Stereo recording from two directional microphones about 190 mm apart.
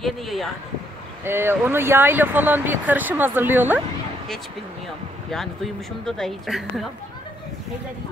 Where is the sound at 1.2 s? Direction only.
10° right (ahead or behind).